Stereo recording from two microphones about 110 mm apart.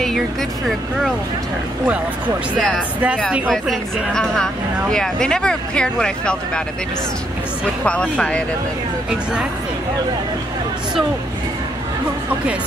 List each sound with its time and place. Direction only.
0.0 s speech: centre (ahead or behind)
3.4 s speech: centre (ahead or behind)
7.8 s speech: 10° left (ahead or behind)